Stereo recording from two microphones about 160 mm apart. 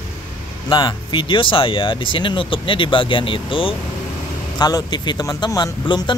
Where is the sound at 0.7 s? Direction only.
30° left (ahead or behind).